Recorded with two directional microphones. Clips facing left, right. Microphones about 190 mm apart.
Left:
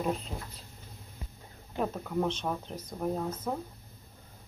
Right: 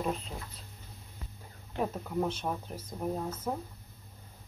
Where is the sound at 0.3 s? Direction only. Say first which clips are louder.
Left 2 dB; 20° left (ahead or behind).